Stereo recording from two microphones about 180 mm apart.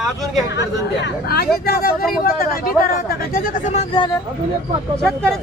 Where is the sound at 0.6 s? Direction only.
70° left (ahead or behind).